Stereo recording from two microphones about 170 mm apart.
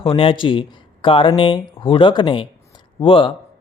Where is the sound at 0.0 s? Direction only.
30° left (ahead or behind).